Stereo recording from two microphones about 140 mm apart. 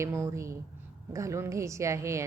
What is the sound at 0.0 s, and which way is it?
A woman's voice, 20° right (ahead or behind).